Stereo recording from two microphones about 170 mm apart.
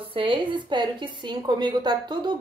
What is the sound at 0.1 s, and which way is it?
A woman's voice, 30° right (ahead or behind).